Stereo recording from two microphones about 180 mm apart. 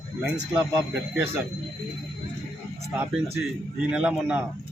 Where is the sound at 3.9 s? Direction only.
5° right (ahead or behind).